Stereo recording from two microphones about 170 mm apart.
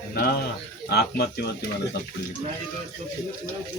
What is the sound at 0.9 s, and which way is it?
Speech, 70° left (ahead or behind).